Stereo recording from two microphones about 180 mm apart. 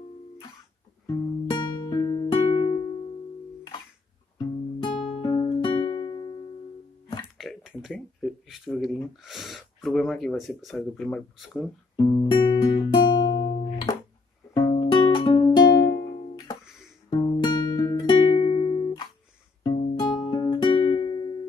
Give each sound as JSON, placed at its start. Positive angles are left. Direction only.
{"t": 1.0, "sound": "music", "side_deg": 20}
{"t": 5.2, "sound": "music", "side_deg": 25}
{"t": 7.3, "sound": "speech", "side_deg": 0}
{"t": 12.2, "sound": "music", "side_deg": 25}